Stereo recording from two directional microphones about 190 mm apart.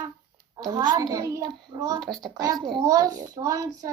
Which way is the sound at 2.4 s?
20° right (ahead or behind).